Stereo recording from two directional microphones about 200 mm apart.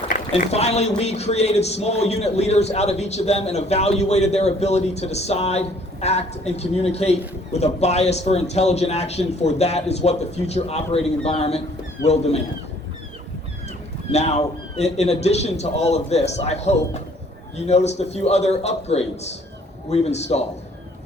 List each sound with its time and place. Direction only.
0.3 s a man's voice: 30° left (ahead or behind)
14.1 s a man's voice: 30° left (ahead or behind)